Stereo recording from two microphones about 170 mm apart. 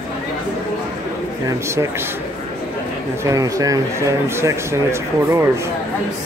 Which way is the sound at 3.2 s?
20° right (ahead or behind).